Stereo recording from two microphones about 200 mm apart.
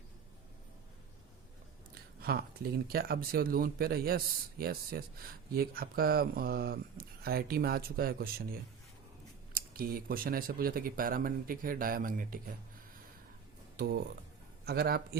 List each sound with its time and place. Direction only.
2.2 s speech: 50° right (ahead or behind)
9.6 s speech: 45° right (ahead or behind)
13.7 s a man's voice: 50° right (ahead or behind)